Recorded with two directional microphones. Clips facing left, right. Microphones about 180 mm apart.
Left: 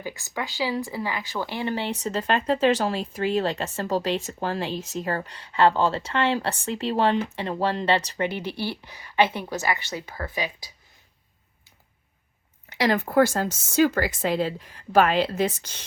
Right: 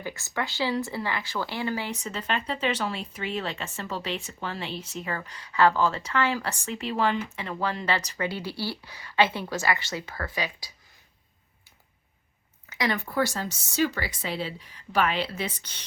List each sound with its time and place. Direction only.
0.0 s speech: 15° left (ahead or behind)
12.7 s speech: 35° left (ahead or behind)
13.1 s a woman's voice: 50° left (ahead or behind)